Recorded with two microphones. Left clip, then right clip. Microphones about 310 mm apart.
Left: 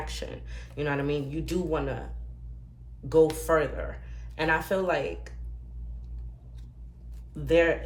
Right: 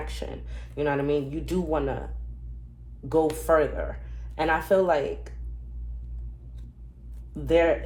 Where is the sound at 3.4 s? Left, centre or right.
Centre.